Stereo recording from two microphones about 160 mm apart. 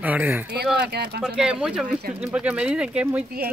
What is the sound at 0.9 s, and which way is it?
Speech, 90° right.